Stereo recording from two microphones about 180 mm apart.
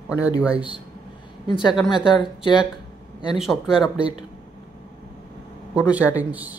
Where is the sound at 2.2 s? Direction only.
25° left (ahead or behind).